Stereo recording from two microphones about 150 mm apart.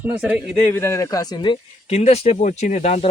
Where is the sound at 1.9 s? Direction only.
45° left (ahead or behind).